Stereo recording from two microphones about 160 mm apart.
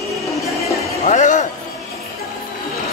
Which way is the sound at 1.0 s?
50° left (ahead or behind).